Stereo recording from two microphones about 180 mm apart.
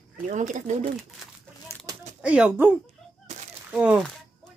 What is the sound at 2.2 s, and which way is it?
Speech, 5° right (ahead or behind).